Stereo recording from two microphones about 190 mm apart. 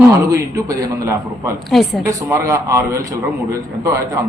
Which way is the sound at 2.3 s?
15° right (ahead or behind).